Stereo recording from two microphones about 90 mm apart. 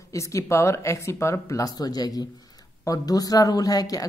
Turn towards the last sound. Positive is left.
turn(degrees=45)  # may be behind; listen again after turning